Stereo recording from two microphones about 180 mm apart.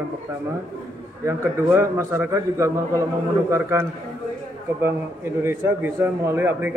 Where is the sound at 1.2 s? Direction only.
15° right (ahead or behind).